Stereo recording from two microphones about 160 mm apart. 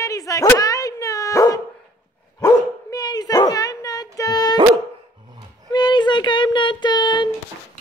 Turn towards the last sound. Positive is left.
turn(degrees=30)  # may be behind; listen again after turning